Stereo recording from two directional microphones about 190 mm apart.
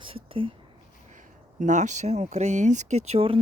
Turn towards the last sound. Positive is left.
turn(degrees=-30)  # may be behind; listen again after turning